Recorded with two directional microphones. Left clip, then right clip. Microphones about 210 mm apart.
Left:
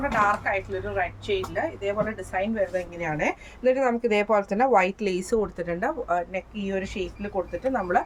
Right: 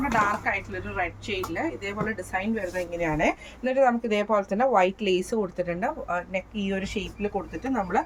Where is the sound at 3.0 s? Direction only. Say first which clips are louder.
Right 4 dB; 20° left (ahead or behind).